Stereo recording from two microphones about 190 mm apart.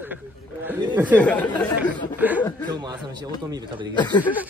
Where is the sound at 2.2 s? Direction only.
10° right (ahead or behind).